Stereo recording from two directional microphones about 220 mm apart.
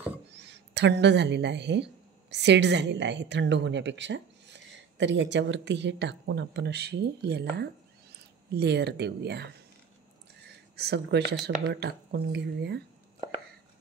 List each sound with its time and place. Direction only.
0.3 s a woman's voice: 50° right (ahead or behind)
10.8 s a woman's voice: 50° right (ahead or behind)